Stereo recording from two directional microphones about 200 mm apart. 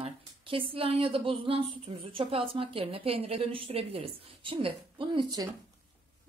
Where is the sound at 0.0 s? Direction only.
25° right (ahead or behind).